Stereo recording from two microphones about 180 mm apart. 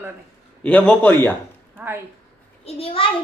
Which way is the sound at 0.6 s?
5° left (ahead or behind).